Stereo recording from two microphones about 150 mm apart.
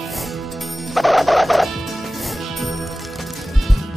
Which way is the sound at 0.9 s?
Centre (ahead or behind).